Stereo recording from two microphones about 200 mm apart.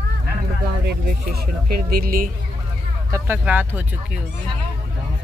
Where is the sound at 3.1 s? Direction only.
10° right (ahead or behind).